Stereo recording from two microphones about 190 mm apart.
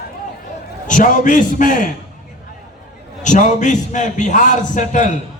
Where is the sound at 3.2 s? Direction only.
40° left (ahead or behind).